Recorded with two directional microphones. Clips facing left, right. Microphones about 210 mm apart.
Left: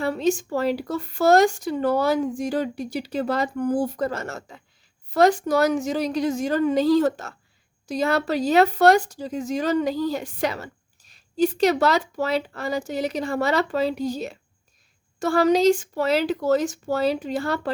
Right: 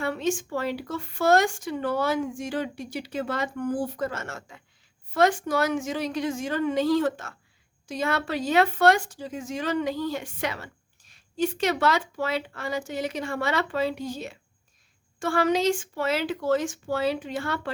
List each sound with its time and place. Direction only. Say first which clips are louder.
0.0 s speech: left 5 dB; 35° left (ahead or behind)